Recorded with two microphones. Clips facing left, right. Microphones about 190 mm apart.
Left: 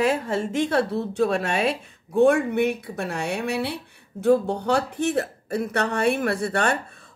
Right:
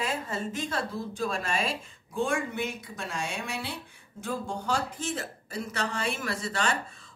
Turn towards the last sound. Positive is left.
turn(degrees=60)  # may be behind; listen again after turning